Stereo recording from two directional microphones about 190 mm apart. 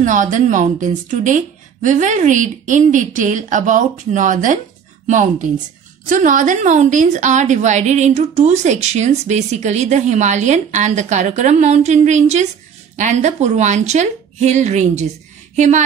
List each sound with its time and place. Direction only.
0.0 s a woman's voice: 40° right (ahead or behind)